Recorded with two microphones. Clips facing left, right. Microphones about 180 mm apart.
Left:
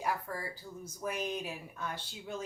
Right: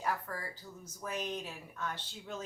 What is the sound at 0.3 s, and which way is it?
Speech, 15° left (ahead or behind).